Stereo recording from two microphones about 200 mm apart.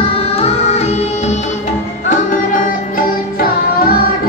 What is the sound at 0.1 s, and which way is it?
Music, 30° left (ahead or behind).